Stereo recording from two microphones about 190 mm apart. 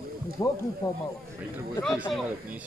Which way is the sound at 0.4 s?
15° left (ahead or behind).